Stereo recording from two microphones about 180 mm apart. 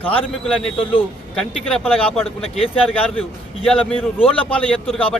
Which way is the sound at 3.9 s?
30° left (ahead or behind).